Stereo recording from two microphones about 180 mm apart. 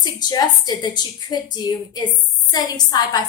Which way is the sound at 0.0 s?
25° left (ahead or behind).